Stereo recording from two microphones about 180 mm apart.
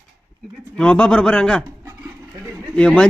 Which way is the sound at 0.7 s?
5° left (ahead or behind).